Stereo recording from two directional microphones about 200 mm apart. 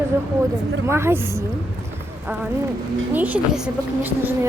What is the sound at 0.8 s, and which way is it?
Speech, 10° right (ahead or behind).